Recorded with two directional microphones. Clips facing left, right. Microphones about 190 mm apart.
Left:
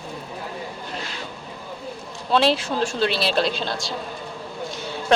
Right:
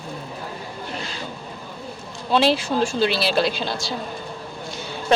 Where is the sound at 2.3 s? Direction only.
Centre (ahead or behind).